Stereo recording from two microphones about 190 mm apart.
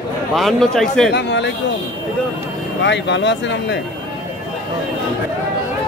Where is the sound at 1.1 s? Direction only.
70° left (ahead or behind).